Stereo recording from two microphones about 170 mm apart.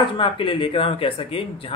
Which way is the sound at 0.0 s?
30° left (ahead or behind).